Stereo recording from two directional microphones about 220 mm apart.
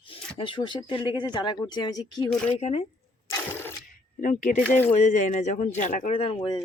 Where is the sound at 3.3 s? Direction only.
10° left (ahead or behind).